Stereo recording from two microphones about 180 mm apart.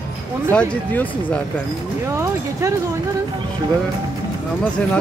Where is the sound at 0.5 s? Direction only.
5° left (ahead or behind).